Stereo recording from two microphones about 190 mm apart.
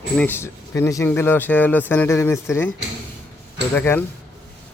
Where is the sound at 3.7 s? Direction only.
10° left (ahead or behind).